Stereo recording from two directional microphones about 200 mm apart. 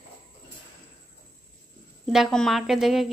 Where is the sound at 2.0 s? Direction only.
Centre (ahead or behind).